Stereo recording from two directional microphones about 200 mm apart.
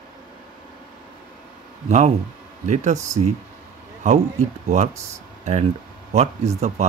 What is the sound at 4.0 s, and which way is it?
Speech, 35° right (ahead or behind).